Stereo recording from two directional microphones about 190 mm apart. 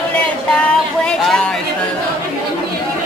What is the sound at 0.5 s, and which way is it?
Speech, 5° left (ahead or behind).